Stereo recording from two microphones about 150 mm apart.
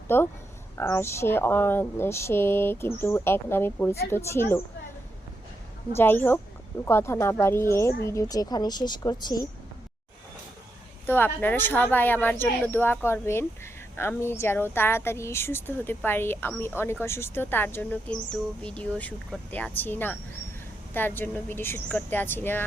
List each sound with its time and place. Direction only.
0.1 s speech: 15° left (ahead or behind)
6.0 s a woman's voice: 15° left (ahead or behind)
11.0 s speech: 15° left (ahead or behind)